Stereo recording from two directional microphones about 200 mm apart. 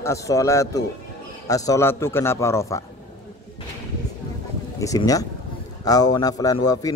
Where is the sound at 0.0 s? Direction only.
15° left (ahead or behind).